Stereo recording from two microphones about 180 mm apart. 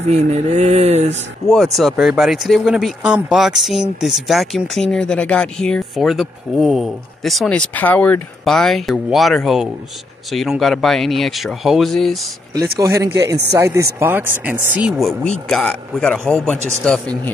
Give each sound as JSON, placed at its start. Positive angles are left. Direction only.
{"t": 0.1, "sound": "speech", "side_deg": -40}
{"t": 1.5, "sound": "speech", "side_deg": 0}
{"t": 12.7, "sound": "speech", "side_deg": -15}